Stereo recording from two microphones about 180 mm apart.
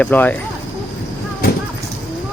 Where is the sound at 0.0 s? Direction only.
10° left (ahead or behind).